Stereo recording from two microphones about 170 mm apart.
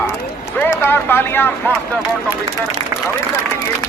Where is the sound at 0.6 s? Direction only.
10° left (ahead or behind).